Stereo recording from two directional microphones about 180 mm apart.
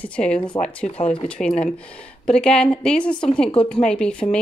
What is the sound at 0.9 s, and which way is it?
Speech, 30° left (ahead or behind).